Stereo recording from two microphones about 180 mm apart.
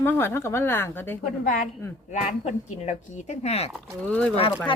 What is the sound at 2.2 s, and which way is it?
Speech, 40° left (ahead or behind).